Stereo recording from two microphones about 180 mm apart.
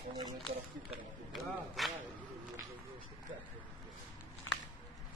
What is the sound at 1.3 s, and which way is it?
Speech, centre (ahead or behind).